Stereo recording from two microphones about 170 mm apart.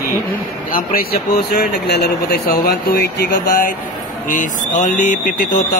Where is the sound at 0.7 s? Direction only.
60° left (ahead or behind).